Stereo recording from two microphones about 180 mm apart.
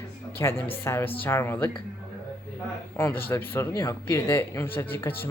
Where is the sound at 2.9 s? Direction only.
10° left (ahead or behind).